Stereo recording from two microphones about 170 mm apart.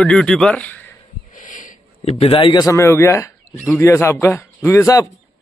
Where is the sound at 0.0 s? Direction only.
5° left (ahead or behind).